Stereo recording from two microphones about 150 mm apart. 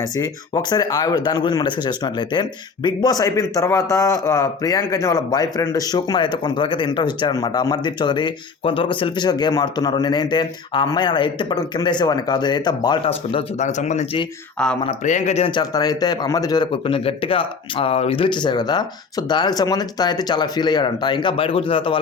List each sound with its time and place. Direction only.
0.0 s speech: 25° left (ahead or behind)
13.0 s speech: 40° left (ahead or behind)
14.6 s speech: 5° left (ahead or behind)
15.0 s speech: 55° left (ahead or behind)
15.4 s speech: 30° left (ahead or behind)